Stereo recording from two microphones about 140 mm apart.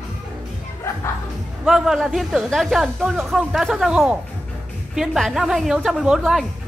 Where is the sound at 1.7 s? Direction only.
5° right (ahead or behind).